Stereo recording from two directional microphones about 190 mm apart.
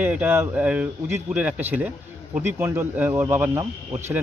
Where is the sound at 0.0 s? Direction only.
10° right (ahead or behind).